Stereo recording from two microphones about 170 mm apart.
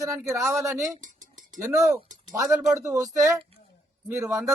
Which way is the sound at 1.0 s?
50° right (ahead or behind).